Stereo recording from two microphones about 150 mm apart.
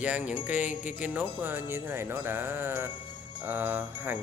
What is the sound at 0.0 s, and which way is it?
Jingle bell, 10° right (ahead or behind).